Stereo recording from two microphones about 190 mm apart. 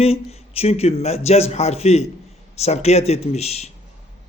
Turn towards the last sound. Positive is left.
turn(degrees=35)  # may be behind; listen again after turning